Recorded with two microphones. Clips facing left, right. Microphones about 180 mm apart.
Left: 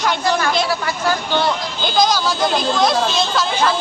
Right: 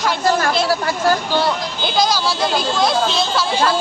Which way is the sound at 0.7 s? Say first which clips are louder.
Right 3 dB; 40° right (ahead or behind).